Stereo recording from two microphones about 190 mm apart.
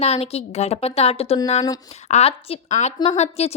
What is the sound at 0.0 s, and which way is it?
A woman's voice, 35° left (ahead or behind).